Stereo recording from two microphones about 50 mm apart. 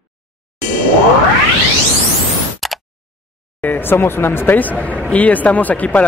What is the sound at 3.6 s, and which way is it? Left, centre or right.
Speech, left.